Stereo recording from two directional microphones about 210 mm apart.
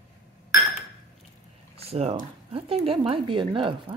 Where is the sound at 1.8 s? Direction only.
30° right (ahead or behind).